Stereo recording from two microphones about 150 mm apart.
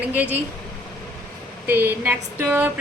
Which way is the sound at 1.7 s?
15° right (ahead or behind).